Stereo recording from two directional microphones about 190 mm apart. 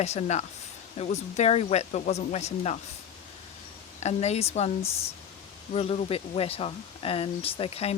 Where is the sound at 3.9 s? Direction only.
35° left (ahead or behind).